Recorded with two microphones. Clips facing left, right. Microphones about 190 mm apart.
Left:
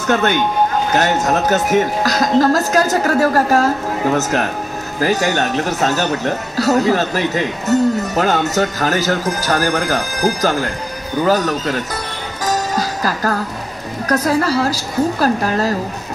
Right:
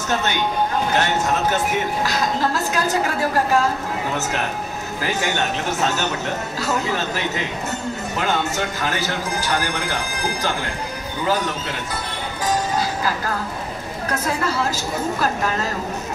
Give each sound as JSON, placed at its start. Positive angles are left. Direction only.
{"t": 0.1, "sound": "a sound", "side_deg": 55}
{"t": 0.9, "sound": "speech", "side_deg": 40}
{"t": 12.4, "sound": "music", "side_deg": 40}
{"t": 14.0, "sound": "speech", "side_deg": 40}